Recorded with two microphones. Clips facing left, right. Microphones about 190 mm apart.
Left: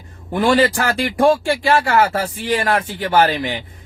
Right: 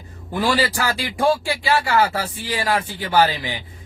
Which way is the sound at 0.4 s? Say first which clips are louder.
Left 6 dB; 55° left (ahead or behind).